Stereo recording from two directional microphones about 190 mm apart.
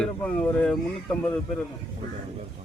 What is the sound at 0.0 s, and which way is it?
Speech, 5° left (ahead or behind).